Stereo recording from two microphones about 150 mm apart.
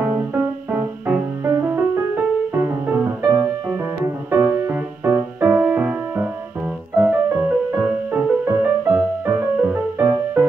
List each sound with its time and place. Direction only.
0.0 s music: 15° right (ahead or behind)